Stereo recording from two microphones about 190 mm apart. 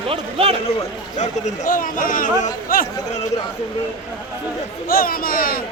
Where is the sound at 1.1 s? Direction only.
40° left (ahead or behind).